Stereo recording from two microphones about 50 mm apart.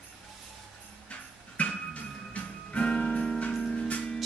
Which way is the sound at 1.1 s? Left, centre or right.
Left.